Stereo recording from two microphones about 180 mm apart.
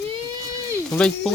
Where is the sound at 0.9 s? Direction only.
5° left (ahead or behind).